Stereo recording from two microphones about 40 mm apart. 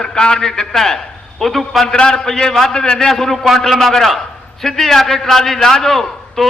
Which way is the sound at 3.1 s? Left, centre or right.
Centre.